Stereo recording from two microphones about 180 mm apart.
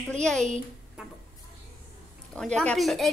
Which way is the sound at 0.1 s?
5° left (ahead or behind).